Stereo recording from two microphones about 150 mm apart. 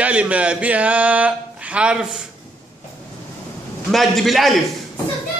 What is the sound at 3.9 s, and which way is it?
Speech, centre (ahead or behind).